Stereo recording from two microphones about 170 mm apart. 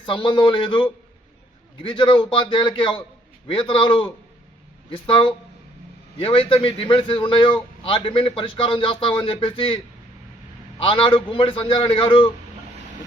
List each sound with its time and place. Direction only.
0.0 s a man's voice: 30° left (ahead or behind)